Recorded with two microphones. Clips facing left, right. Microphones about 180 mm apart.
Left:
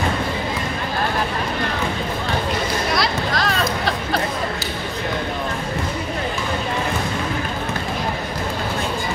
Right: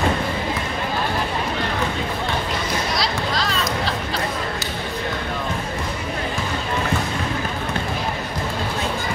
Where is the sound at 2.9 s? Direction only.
55° left (ahead or behind).